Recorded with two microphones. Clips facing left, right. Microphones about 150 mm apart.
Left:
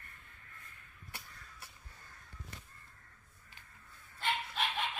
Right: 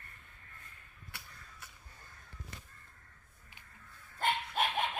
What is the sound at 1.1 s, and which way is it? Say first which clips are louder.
Crow: left 1 dB; 35° left (ahead or behind).